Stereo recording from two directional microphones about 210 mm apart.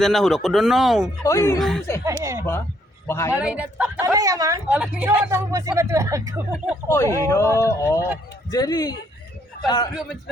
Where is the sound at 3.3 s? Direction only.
5° right (ahead or behind).